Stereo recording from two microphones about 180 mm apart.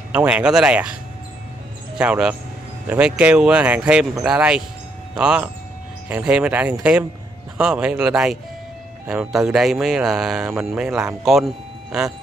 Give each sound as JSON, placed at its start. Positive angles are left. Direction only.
{"t": 0.1, "sound": "speech", "side_deg": -10}
{"t": 2.0, "sound": "speech", "side_deg": -5}